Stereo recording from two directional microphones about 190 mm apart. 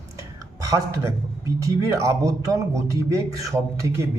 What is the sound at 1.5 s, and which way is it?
Speech, 15° right (ahead or behind).